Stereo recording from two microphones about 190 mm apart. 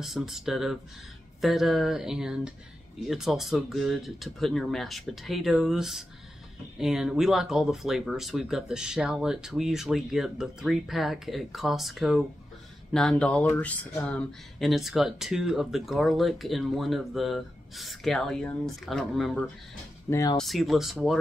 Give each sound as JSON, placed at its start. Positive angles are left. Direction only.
{"t": 0.0, "sound": "speech", "side_deg": 0}
{"t": 20.1, "sound": "speech", "side_deg": 20}
{"t": 20.3, "sound": "speech", "side_deg": 0}